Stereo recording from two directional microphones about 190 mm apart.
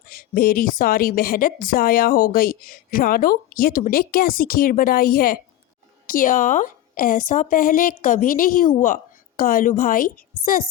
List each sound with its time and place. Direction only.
0.1 s a woman's voice: 50° left (ahead or behind)